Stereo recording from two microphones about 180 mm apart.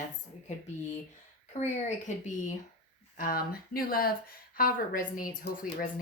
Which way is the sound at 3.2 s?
55° left (ahead or behind).